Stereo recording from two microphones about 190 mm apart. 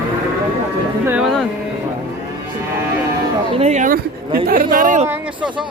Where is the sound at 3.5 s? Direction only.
35° right (ahead or behind).